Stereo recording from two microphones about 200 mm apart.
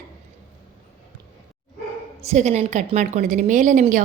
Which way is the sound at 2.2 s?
35° right (ahead or behind).